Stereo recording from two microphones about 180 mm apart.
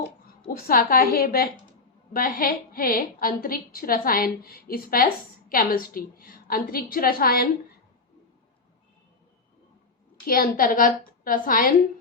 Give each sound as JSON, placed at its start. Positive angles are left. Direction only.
{"t": 0.4, "sound": "a woman's voice", "side_deg": 55}
{"t": 10.2, "sound": "a woman's voice", "side_deg": 55}